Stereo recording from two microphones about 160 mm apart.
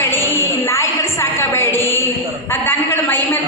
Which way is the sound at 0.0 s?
15° left (ahead or behind).